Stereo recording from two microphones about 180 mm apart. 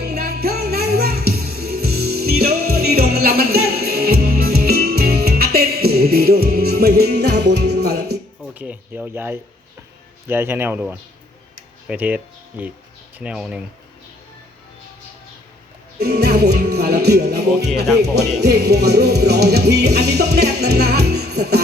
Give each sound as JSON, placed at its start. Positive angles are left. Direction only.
{"t": 0.0, "sound": "music", "side_deg": -60}
{"t": 8.5, "sound": "speech", "side_deg": -10}
{"t": 16.0, "sound": "music", "side_deg": -65}